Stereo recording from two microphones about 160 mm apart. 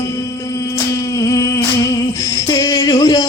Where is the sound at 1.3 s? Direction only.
20° left (ahead or behind).